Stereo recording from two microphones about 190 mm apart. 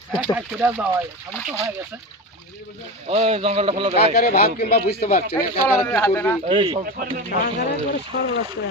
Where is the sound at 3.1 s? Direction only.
30° right (ahead or behind).